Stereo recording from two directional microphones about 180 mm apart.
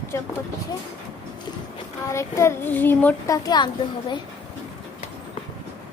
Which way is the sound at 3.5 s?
25° left (ahead or behind).